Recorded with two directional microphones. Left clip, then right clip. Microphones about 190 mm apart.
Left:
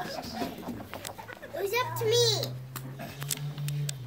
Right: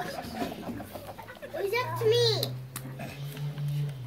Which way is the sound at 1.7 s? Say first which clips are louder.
Right 1 dB; 25° left (ahead or behind).